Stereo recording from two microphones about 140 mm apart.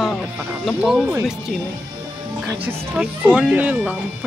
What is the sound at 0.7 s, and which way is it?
Speech, centre (ahead or behind).